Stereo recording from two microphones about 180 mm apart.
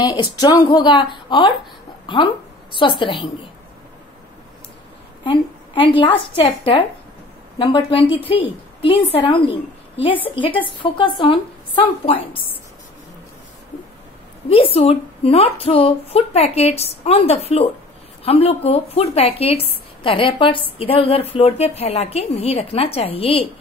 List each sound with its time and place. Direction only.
0.0 s a woman's voice: 25° left (ahead or behind)
5.2 s a woman's voice: 30° left (ahead or behind)
14.5 s a woman's voice: 30° left (ahead or behind)